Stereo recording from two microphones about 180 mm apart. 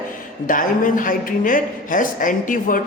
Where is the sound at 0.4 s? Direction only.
45° left (ahead or behind).